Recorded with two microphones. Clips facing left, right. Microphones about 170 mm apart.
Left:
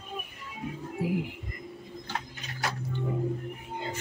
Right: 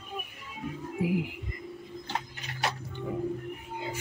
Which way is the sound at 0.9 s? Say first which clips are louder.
Right 1 dB; 10° right (ahead or behind).